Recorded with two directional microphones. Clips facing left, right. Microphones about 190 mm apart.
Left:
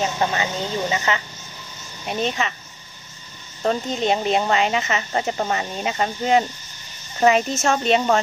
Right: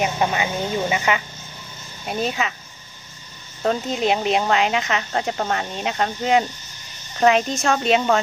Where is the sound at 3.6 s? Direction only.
Centre (ahead or behind).